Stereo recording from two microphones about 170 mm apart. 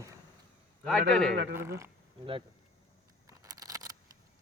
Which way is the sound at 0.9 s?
5° left (ahead or behind).